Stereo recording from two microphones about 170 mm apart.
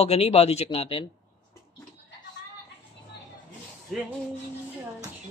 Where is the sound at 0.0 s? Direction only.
35° left (ahead or behind).